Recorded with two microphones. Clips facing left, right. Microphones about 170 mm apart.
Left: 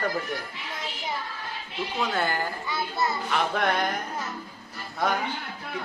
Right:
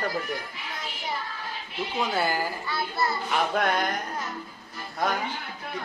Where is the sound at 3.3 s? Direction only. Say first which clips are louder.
Right 1 dB; centre (ahead or behind).